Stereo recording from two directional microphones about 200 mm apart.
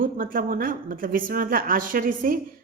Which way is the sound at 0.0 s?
45° right (ahead or behind).